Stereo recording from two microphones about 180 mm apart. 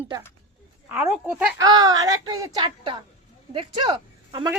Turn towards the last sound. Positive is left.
turn(degrees=-25)  # may be behind; listen again after turning